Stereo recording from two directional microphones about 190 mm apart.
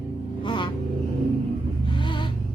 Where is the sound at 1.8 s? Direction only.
25° left (ahead or behind).